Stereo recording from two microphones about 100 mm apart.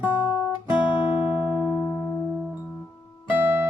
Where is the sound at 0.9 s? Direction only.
50° left (ahead or behind).